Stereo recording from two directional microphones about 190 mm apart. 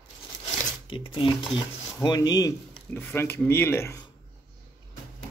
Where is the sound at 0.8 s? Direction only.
25° left (ahead or behind).